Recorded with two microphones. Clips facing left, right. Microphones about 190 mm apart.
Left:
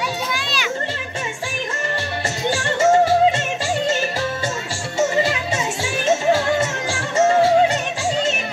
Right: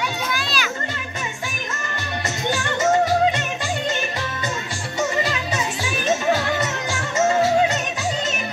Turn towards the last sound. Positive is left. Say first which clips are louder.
# left 3 dB
turn(degrees=30)  # may be behind; listen again after turning